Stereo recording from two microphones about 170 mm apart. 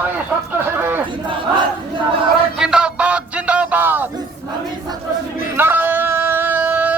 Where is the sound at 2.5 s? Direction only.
5° right (ahead or behind).